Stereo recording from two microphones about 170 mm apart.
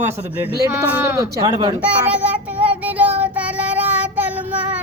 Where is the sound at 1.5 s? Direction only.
30° right (ahead or behind).